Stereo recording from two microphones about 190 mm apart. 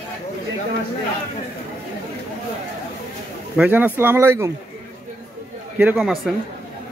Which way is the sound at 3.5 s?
5° right (ahead or behind).